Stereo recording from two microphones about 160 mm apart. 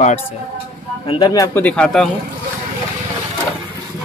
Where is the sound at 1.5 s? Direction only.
10° left (ahead or behind).